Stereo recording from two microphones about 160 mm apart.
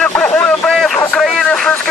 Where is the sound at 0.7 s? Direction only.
Centre (ahead or behind).